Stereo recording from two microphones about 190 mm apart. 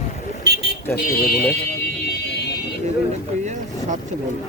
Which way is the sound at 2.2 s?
60° left (ahead or behind).